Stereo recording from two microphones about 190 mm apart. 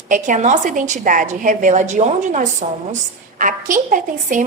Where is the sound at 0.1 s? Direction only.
40° right (ahead or behind).